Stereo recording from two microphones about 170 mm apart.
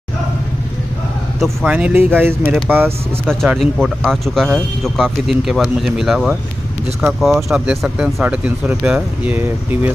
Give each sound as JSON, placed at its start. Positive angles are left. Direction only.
{"t": 1.4, "sound": "speech", "side_deg": -5}
{"t": 3.3, "sound": "speech", "side_deg": 0}